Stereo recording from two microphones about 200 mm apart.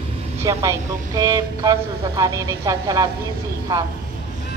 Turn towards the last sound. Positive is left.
turn(degrees=-20)  # may be behind; listen again after turning